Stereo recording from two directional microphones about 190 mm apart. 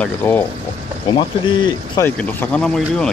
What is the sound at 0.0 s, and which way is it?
Speech, 10° left (ahead or behind).